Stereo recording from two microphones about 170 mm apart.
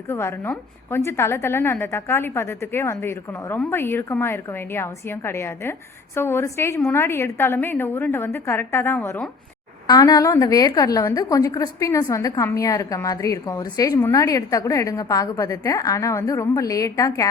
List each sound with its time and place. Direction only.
0.1 s a woman's voice: 15° left (ahead or behind)
9.8 s a woman's voice: 20° left (ahead or behind)